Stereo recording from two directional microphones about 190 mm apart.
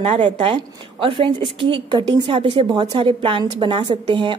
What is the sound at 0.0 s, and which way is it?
A woman's voice, 35° right (ahead or behind).